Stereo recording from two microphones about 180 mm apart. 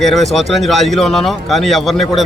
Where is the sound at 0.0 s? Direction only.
Centre (ahead or behind).